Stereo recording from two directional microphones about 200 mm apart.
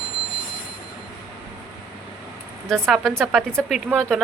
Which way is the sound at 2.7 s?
Centre (ahead or behind).